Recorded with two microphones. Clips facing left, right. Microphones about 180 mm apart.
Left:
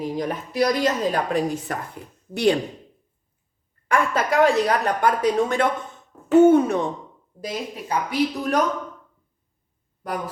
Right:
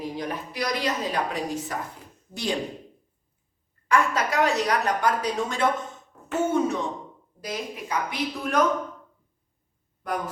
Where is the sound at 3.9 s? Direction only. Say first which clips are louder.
Left 2 dB; 50° left (ahead or behind).